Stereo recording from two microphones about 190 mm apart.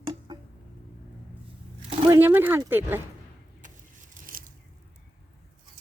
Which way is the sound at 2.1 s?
10° right (ahead or behind).